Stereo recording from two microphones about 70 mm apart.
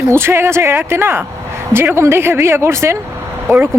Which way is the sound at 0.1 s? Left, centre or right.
Right.